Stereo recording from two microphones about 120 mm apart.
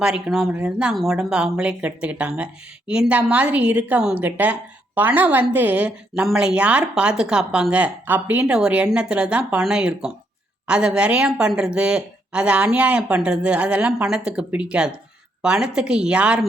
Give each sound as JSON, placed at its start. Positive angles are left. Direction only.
{"t": 0.0, "sound": "speech", "side_deg": -5}